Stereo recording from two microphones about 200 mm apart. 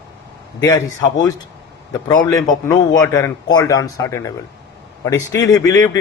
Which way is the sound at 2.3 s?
20° left (ahead or behind).